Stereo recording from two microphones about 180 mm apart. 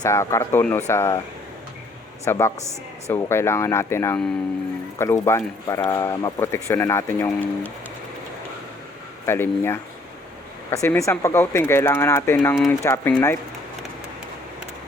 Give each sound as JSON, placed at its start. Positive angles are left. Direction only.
{"t": 0.0, "sound": "speech", "side_deg": 15}
{"t": 2.2, "sound": "speech", "side_deg": 15}
{"t": 9.2, "sound": "speech", "side_deg": 15}